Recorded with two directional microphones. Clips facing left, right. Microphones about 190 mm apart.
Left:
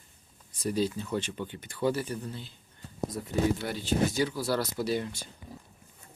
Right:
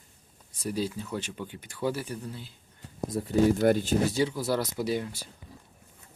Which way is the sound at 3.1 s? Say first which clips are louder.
Right 5 dB; 30° right (ahead or behind).